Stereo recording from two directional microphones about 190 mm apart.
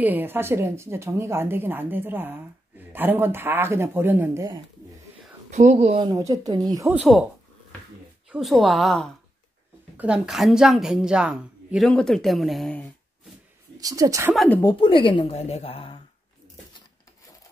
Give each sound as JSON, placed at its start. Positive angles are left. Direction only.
{"t": 0.0, "sound": "a woman's voice", "side_deg": -10}
{"t": 5.5, "sound": "speech", "side_deg": -35}
{"t": 7.0, "sound": "a woman's voice", "side_deg": 0}
{"t": 8.3, "sound": "a woman's voice", "side_deg": 0}
{"t": 13.7, "sound": "a woman's voice", "side_deg": -20}
{"t": 14.3, "sound": "a woman's voice", "side_deg": 0}
{"t": 14.6, "sound": "a woman's voice", "side_deg": 20}